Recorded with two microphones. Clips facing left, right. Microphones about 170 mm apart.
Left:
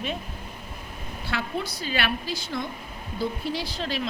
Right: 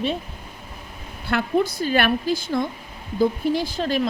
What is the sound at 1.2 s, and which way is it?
A woman's voice, 50° right (ahead or behind).